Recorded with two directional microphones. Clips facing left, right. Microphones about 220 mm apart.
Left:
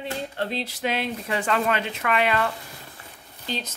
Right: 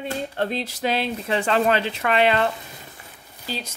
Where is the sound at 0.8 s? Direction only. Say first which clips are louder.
Right 3 dB; 30° right (ahead or behind).